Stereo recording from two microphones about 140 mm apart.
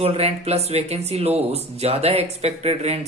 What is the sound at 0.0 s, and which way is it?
Speech, 45° right (ahead or behind).